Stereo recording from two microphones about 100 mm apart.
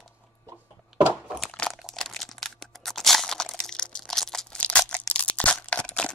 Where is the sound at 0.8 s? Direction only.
10° right (ahead or behind).